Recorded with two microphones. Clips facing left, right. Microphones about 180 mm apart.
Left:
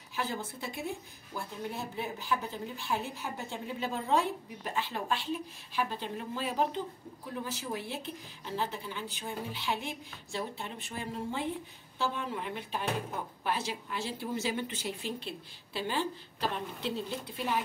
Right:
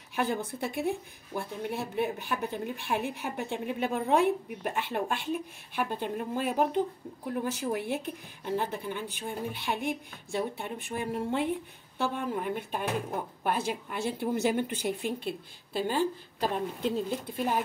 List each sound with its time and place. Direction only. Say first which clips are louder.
0.1 s speech: right 6 dB; 60° right (ahead or behind)
12.0 s a woman's voice: right 4 dB; 50° right (ahead or behind)